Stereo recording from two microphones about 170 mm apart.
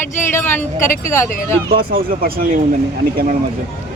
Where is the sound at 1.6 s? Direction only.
65° right (ahead or behind).